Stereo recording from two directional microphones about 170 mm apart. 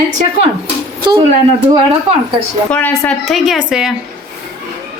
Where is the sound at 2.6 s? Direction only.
5° left (ahead or behind).